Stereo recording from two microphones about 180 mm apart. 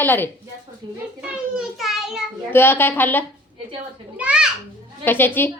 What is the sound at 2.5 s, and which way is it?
Speech, 10° left (ahead or behind).